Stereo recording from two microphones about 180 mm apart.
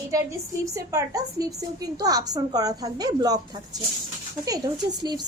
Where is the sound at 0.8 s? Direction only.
15° right (ahead or behind).